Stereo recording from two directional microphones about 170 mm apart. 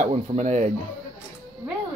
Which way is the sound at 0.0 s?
45° right (ahead or behind).